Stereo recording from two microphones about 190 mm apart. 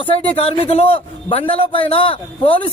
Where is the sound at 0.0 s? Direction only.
30° left (ahead or behind).